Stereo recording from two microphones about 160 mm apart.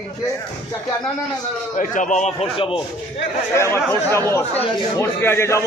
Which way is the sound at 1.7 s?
50° left (ahead or behind).